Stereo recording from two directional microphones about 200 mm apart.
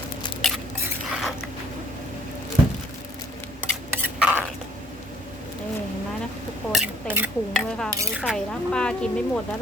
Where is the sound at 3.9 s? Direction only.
10° right (ahead or behind).